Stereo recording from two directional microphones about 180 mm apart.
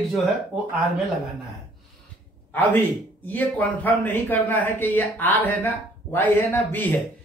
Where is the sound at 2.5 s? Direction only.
10° left (ahead or behind).